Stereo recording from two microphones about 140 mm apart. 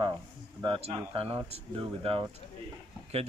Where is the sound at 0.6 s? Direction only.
40° right (ahead or behind).